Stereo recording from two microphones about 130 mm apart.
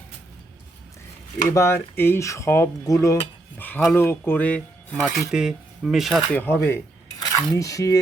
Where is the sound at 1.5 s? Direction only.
20° left (ahead or behind).